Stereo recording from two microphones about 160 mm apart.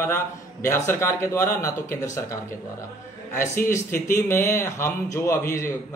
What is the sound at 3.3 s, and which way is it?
Speech, 15° left (ahead or behind).